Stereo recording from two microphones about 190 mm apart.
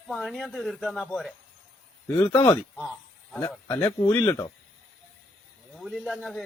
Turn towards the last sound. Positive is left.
turn(degrees=0)  # may be behind; listen again after turning